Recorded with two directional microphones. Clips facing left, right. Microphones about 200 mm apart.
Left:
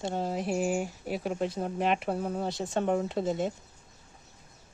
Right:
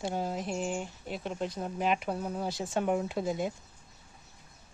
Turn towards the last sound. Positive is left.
turn(degrees=0)  # may be behind; listen again after turning